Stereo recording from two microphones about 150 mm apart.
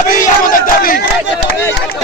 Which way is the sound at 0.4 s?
70° left (ahead or behind).